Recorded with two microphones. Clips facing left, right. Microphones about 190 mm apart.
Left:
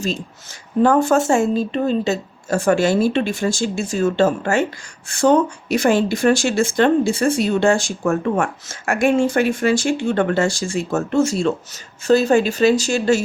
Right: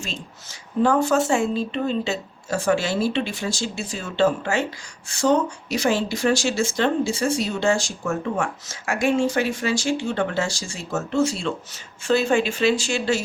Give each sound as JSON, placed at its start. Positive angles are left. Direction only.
{"t": 0.8, "sound": "speech", "side_deg": 50}